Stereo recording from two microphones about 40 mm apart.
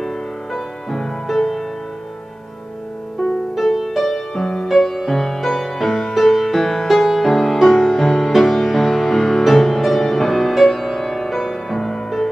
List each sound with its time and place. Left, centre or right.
0.0 s music: centre
3.5 s music: centre